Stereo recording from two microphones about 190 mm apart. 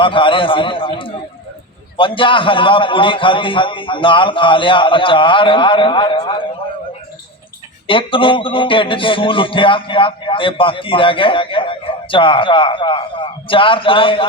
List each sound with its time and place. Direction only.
0.0 s music: 25° left (ahead or behind)
7.9 s music: 25° left (ahead or behind)